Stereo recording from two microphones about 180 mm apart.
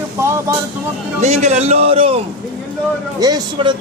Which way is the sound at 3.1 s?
20° right (ahead or behind).